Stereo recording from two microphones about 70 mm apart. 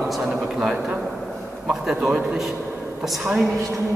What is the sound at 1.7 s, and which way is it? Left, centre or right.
A woman's voice, centre.